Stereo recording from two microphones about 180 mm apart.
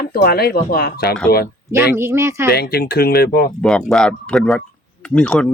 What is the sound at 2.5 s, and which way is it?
Speech, 60° left (ahead or behind).